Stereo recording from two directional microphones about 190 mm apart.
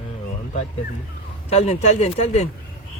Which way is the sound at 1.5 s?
35° left (ahead or behind).